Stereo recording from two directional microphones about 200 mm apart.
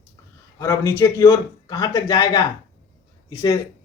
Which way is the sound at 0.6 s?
15° left (ahead or behind).